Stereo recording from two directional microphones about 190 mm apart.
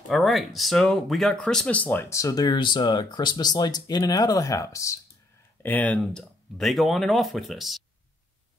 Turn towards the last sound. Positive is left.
turn(degrees=0)  # may be behind; listen again after turning